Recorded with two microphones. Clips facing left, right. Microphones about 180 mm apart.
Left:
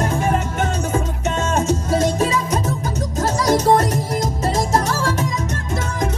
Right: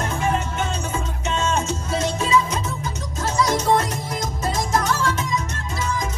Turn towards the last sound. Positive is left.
turn(degrees=35)  # may be behind; listen again after turning